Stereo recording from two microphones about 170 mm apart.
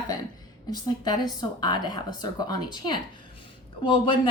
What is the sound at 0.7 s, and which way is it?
Speech, 25° left (ahead or behind).